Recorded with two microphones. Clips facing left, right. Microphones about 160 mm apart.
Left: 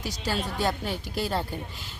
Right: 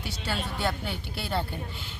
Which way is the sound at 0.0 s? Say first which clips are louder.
Left 3 dB; 40° left (ahead or behind).